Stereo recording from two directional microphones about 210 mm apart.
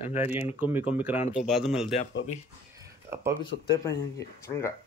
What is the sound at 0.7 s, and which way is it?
Speech, 10° right (ahead or behind).